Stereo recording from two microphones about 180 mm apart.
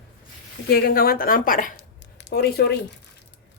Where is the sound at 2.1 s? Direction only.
70° left (ahead or behind).